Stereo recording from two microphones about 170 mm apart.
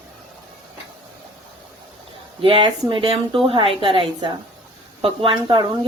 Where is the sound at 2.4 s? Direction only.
30° right (ahead or behind).